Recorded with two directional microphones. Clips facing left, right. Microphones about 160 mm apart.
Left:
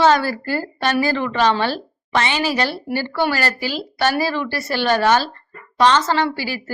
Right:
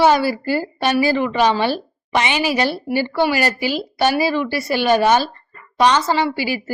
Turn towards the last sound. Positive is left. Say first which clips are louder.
# right 1 dB
turn(degrees=-15)  # may be behind; listen again after turning